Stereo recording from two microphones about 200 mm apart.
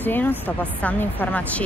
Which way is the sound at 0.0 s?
10° left (ahead or behind).